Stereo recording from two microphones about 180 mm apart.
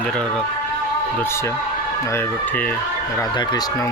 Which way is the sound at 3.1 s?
20° left (ahead or behind).